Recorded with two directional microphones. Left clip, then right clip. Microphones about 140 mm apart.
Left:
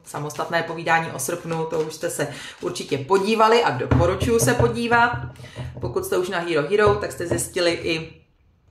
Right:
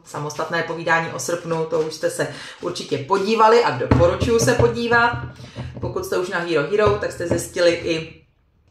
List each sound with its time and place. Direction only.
0.1 s speech: 15° left (ahead or behind)